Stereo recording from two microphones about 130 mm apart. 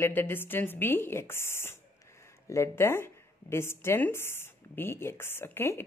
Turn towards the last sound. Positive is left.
turn(degrees=15)  # may be behind; listen again after turning